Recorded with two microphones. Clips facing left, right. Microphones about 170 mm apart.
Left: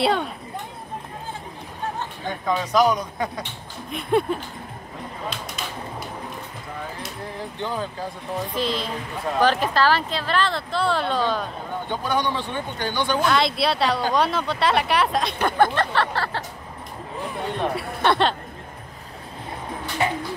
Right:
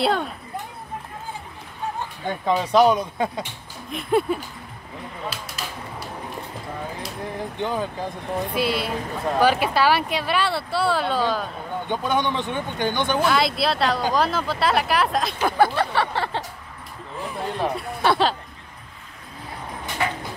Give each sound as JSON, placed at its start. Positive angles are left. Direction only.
{"t": 0.0, "sound": "speech", "side_deg": 0}
{"t": 2.6, "sound": "speech", "side_deg": -30}
{"t": 3.9, "sound": "speech", "side_deg": -5}
{"t": 5.3, "sound": "a sound", "side_deg": 0}
{"t": 7.5, "sound": "speech", "side_deg": -15}
{"t": 11.9, "sound": "speech", "side_deg": -20}
{"t": 13.2, "sound": "speech", "side_deg": 0}
{"t": 17.2, "sound": "speech", "side_deg": 0}
{"t": 20.0, "sound": "bird", "side_deg": 20}